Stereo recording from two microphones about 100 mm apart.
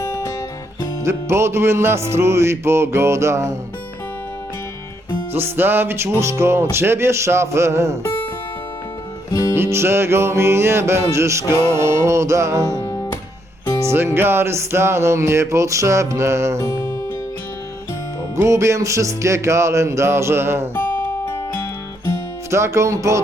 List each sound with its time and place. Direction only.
0.0 s guitar: 35° left (ahead or behind)
1.0 s music: 25° right (ahead or behind)
5.3 s music: 20° right (ahead or behind)
8.0 s music: 20° left (ahead or behind)
9.3 s music: 35° left (ahead or behind)
9.6 s music: 25° right (ahead or behind)
12.8 s music: 25° left (ahead or behind)
13.8 s music: 25° right (ahead or behind)
18.3 s music: 30° right (ahead or behind)
21.2 s music: 30° left (ahead or behind)
22.4 s music: 30° right (ahead or behind)